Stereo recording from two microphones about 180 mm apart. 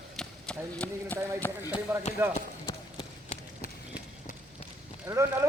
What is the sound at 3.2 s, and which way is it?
Run, 55° left (ahead or behind).